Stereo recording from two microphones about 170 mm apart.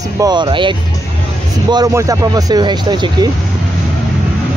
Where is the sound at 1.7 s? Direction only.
20° right (ahead or behind).